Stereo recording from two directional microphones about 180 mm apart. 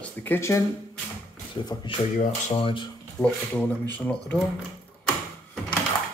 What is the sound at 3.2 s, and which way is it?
Speech, 15° left (ahead or behind).